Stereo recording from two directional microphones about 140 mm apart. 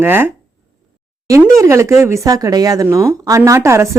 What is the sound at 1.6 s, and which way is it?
A woman's voice, 20° right (ahead or behind).